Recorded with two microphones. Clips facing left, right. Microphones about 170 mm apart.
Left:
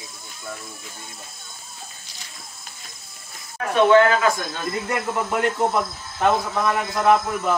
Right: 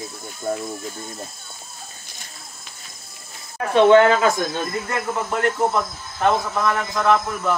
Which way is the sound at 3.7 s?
25° right (ahead or behind).